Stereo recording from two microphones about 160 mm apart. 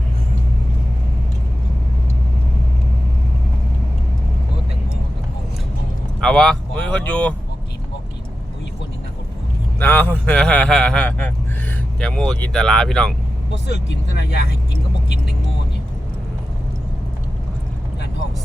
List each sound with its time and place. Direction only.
6.1 s speech: 5° left (ahead or behind)
9.8 s a man's voice: 10° left (ahead or behind)
14.2 s speech: 90° left